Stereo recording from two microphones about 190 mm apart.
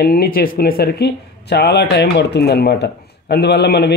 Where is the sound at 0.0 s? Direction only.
50° left (ahead or behind).